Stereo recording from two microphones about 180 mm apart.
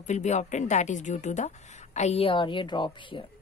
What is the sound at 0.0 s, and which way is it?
Speech, 40° left (ahead or behind).